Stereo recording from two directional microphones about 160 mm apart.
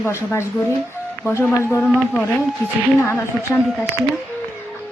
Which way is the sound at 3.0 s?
15° left (ahead or behind).